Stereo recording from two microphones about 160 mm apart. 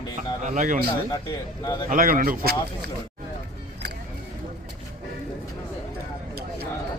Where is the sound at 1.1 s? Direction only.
25° left (ahead or behind).